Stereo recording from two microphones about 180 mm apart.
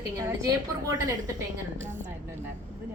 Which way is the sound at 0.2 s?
15° right (ahead or behind).